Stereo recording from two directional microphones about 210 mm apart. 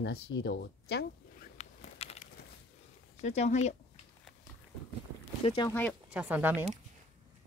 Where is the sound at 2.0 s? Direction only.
30° left (ahead or behind).